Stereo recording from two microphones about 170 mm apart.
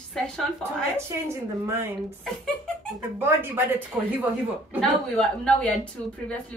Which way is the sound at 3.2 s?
10° right (ahead or behind).